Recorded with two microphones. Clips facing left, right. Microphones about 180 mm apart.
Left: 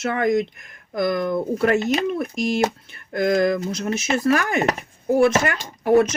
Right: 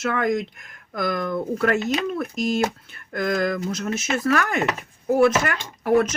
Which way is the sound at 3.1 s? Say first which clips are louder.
Left 4 dB; 30° left (ahead or behind).